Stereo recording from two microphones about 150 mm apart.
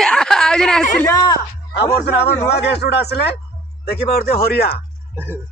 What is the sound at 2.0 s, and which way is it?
Speech, 90° left.